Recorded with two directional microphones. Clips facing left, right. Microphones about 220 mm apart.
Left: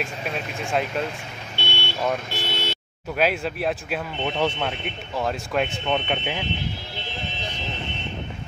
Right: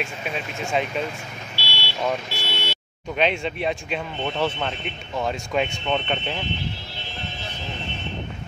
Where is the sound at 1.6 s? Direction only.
50° left (ahead or behind).